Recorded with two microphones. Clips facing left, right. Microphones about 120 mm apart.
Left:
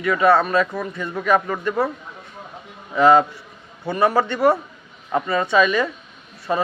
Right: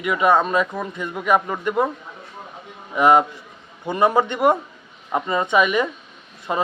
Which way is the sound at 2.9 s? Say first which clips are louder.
Left 1 dB; 15° right (ahead or behind).